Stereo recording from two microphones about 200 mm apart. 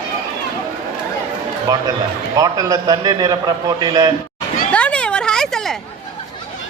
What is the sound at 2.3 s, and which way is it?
A man's voice, 20° right (ahead or behind).